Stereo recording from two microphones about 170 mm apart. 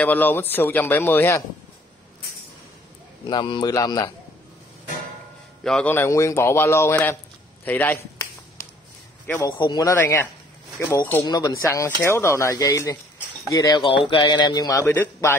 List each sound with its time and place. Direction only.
0.0 s a man's voice: 10° left (ahead or behind)
3.3 s speech: 25° left (ahead or behind)
5.6 s a man's voice: 5° left (ahead or behind)
9.4 s a man's voice: 25° left (ahead or behind)
11.2 s speech: 25° left (ahead or behind)